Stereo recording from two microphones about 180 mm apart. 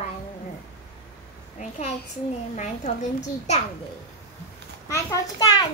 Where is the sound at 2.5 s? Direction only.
40° left (ahead or behind).